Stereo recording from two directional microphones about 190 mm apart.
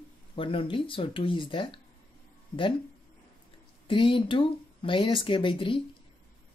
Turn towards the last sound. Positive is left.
turn(degrees=25)  # may be behind; listen again after turning